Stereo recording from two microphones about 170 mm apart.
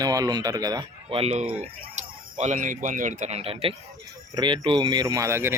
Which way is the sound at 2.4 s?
45° right (ahead or behind).